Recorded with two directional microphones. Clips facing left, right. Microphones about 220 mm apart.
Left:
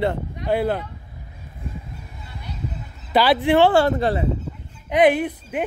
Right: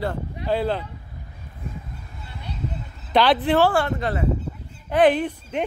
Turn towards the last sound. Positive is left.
turn(degrees=10)  # may be behind; listen again after turning